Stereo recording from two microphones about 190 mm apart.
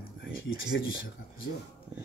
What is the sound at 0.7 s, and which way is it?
Speech, 65° left (ahead or behind).